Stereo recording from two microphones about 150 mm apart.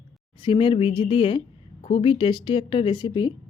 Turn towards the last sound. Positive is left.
turn(degrees=30)  # may be behind; listen again after turning